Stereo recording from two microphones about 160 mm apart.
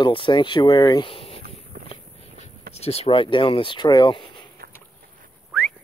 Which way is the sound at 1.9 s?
45° left (ahead or behind).